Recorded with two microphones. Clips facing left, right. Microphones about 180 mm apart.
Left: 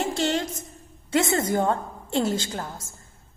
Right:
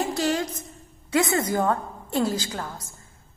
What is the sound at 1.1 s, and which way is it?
A woman's voice, 25° left (ahead or behind).